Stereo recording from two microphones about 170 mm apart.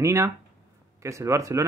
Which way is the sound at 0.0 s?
15° right (ahead or behind).